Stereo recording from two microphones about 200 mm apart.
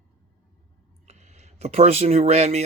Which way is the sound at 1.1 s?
35° right (ahead or behind).